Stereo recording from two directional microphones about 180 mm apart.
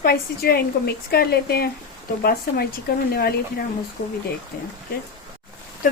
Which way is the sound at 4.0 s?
70° left (ahead or behind).